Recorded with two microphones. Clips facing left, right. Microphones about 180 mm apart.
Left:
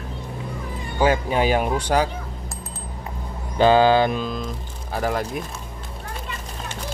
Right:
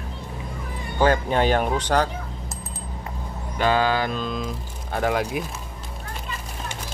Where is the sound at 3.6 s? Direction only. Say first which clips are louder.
Left 6 dB; 30° left (ahead or behind).